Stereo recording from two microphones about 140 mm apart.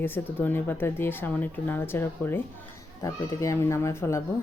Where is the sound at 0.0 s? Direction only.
15° left (ahead or behind).